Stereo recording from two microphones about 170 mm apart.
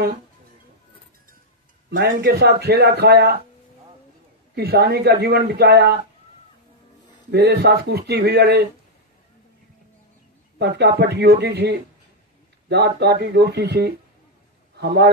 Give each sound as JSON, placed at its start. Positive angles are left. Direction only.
{"t": 1.9, "sound": "a man's voice", "side_deg": -85}
{"t": 4.6, "sound": "a man's voice", "side_deg": -65}
{"t": 7.2, "sound": "a man's voice", "side_deg": -75}
{"t": 10.8, "sound": "a man's voice", "side_deg": -75}